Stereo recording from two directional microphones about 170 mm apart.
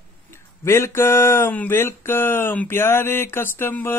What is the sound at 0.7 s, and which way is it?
Speech, 15° left (ahead or behind).